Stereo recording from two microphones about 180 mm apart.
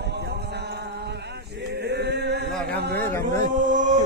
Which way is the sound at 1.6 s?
65° right (ahead or behind).